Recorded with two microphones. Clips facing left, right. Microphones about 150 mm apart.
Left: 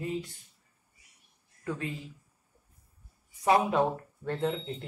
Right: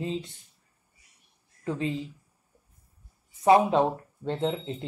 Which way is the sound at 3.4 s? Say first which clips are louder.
Right 5 dB; 25° right (ahead or behind).